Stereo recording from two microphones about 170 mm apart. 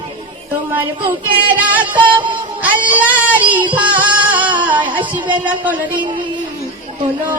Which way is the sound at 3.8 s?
10° right (ahead or behind).